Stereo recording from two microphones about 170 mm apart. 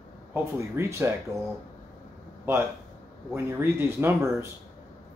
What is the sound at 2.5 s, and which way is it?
Speech, 15° right (ahead or behind).